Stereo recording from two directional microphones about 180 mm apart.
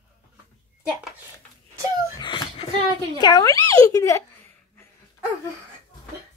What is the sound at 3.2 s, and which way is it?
Speech, 25° left (ahead or behind).